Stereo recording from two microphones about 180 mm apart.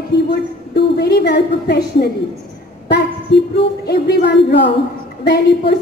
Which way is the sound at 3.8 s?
65° left (ahead or behind).